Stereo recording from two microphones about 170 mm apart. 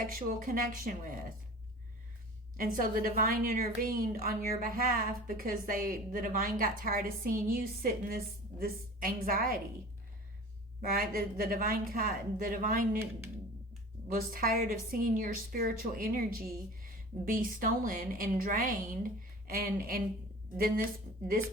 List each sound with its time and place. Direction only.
0.0 s a woman's voice: 50° right (ahead or behind)
2.6 s a woman's voice: 55° right (ahead or behind)
10.8 s a woman's voice: 55° right (ahead or behind)
14.1 s a woman's voice: 55° right (ahead or behind)